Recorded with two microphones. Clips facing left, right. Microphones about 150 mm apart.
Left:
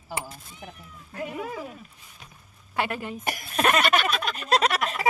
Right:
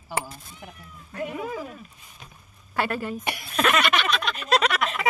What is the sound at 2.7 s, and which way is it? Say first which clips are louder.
Speech: right 2 dB; 20° left (ahead or behind).